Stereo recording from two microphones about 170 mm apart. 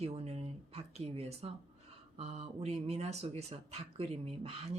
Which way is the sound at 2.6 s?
40° right (ahead or behind).